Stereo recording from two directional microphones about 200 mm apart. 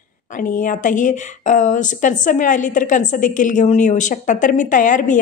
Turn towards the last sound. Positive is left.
turn(degrees=40)  # may be behind; listen again after turning